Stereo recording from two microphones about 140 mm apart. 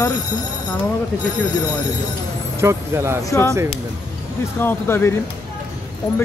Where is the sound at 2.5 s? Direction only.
20° right (ahead or behind).